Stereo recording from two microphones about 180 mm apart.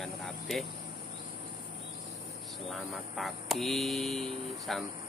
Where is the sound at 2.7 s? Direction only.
Centre (ahead or behind).